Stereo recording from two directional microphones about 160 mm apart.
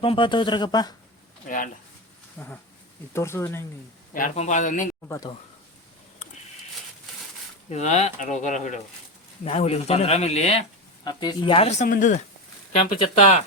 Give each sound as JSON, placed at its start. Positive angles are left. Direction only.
{"t": 0.0, "sound": "speech", "side_deg": 35}
{"t": 1.5, "sound": "speech", "side_deg": 55}
{"t": 2.4, "sound": "speech", "side_deg": 15}
{"t": 4.4, "sound": "speech", "side_deg": 50}
{"t": 5.0, "sound": "speech", "side_deg": 15}
{"t": 7.7, "sound": "speech", "side_deg": 45}
{"t": 9.4, "sound": "speech", "side_deg": 40}
{"t": 11.0, "sound": "speech", "side_deg": 25}
{"t": 13.0, "sound": "speech", "side_deg": 40}